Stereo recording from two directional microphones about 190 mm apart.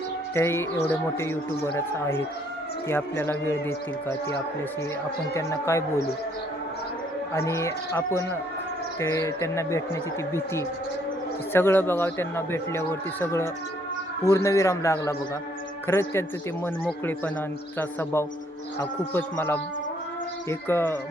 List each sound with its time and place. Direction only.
0.3 s a man's voice: 15° left (ahead or behind)
5.3 s a man's voice: 15° left (ahead or behind)
7.3 s a man's voice: 15° left (ahead or behind)
17.7 s a man's voice: 15° left (ahead or behind)